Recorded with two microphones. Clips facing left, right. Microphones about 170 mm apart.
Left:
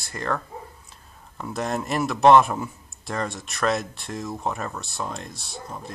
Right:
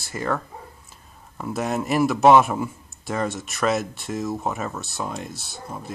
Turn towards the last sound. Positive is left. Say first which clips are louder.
# right 1 dB
turn(degrees=-5)  # may be behind; listen again after turning